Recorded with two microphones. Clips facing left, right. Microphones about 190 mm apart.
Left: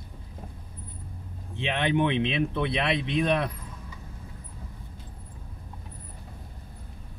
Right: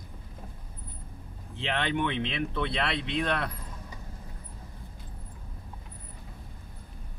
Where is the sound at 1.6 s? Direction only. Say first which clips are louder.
Left 4 dB; 15° left (ahead or behind).